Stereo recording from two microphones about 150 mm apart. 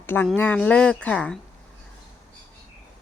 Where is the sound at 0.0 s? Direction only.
15° left (ahead or behind).